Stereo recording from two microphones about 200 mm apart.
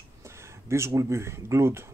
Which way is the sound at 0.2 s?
15° right (ahead or behind).